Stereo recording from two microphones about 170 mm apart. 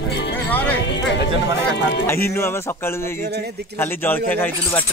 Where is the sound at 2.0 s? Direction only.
15° left (ahead or behind).